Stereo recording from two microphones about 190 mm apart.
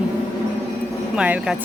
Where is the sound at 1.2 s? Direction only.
5° right (ahead or behind).